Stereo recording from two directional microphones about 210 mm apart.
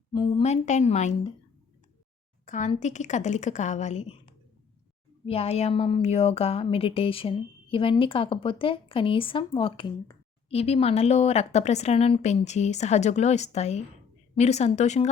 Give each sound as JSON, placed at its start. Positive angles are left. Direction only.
{"t": 0.1, "sound": "a woman's voice", "side_deg": 25}
{"t": 2.5, "sound": "a woman's voice", "side_deg": 35}
{"t": 5.2, "sound": "a woman's voice", "side_deg": 30}